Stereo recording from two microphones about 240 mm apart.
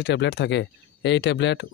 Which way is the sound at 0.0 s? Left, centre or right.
Left.